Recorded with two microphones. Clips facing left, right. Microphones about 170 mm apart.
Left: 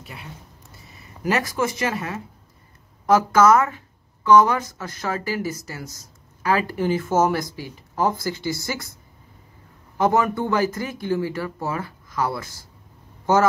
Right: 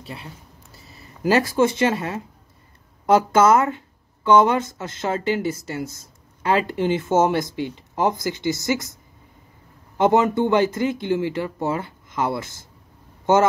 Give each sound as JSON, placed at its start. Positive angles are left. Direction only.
{"t": 0.0, "sound": "speech", "side_deg": -30}
{"t": 9.9, "sound": "speech", "side_deg": -25}